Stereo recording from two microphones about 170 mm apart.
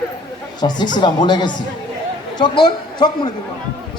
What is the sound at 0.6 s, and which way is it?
A man's voice, 25° left (ahead or behind).